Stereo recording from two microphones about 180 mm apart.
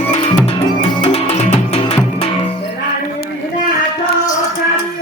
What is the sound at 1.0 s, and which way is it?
Music, 35° left (ahead or behind).